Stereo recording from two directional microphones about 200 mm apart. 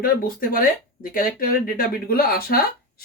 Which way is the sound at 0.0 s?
45° left (ahead or behind).